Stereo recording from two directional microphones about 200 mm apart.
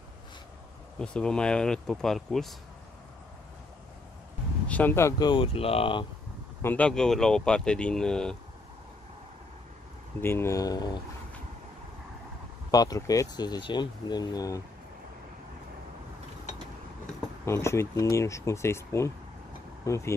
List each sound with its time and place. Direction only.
0.9 s speech: 5° left (ahead or behind)
4.6 s speech: 10° left (ahead or behind)
5.3 s speech: 25° left (ahead or behind)
6.6 s speech: 10° left (ahead or behind)
10.2 s speech: 10° left (ahead or behind)
12.7 s speech: 20° left (ahead or behind)
17.0 s speech: 15° left (ahead or behind)